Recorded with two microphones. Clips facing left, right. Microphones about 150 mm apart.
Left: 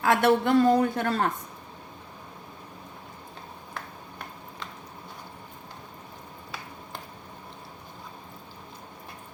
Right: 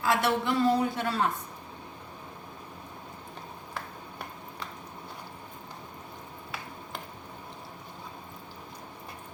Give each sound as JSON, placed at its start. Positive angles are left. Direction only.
{"t": 0.0, "sound": "a woman's voice", "side_deg": 55}